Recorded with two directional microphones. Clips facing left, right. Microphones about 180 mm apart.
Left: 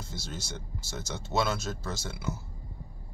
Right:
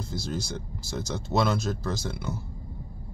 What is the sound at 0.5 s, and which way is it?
Speech, 5° left (ahead or behind).